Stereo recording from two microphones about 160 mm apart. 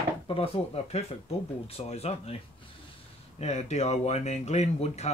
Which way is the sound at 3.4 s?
45° left (ahead or behind).